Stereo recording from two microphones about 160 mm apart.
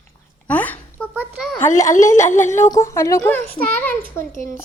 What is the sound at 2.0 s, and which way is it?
A woman's voice, 15° left (ahead or behind).